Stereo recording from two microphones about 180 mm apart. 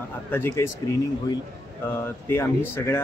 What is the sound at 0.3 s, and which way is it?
Speech, 15° left (ahead or behind).